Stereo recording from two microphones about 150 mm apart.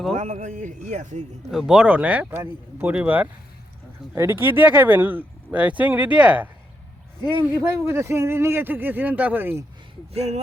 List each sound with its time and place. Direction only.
0.2 s a man's voice: 50° right (ahead or behind)
1.5 s speech: 5° right (ahead or behind)
7.6 s speech: 15° right (ahead or behind)
10.2 s a man's voice: 45° right (ahead or behind)